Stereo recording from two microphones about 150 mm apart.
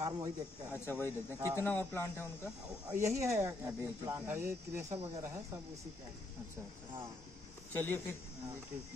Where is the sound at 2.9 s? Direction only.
20° right (ahead or behind).